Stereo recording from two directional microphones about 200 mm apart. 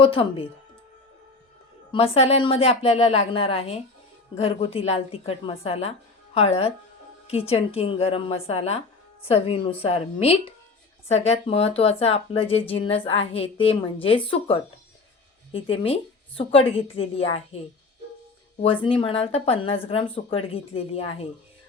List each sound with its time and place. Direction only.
0.0 s speech: 25° left (ahead or behind)
1.9 s speech: 30° left (ahead or behind)
18.6 s speech: 25° left (ahead or behind)